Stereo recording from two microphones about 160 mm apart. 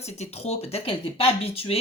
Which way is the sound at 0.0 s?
40° left (ahead or behind).